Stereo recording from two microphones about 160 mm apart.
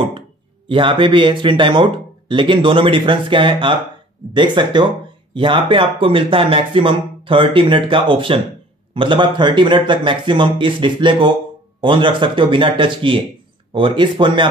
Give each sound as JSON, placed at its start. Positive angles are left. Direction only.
{"t": 0.7, "sound": "speech", "side_deg": -30}